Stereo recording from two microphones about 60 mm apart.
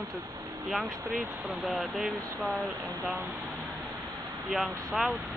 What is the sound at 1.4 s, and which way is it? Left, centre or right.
Speech, centre.